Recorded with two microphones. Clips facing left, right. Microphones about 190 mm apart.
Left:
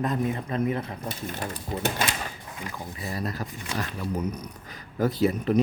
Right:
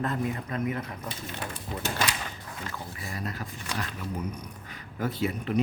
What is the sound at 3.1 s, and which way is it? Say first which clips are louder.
Speech: left 4 dB; 40° left (ahead or behind).